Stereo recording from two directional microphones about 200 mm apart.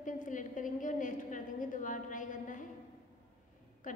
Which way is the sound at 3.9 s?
40° left (ahead or behind).